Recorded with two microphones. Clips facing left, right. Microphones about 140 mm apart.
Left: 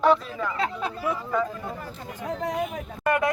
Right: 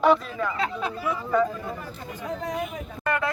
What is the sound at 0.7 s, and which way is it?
Speech, 40° left (ahead or behind).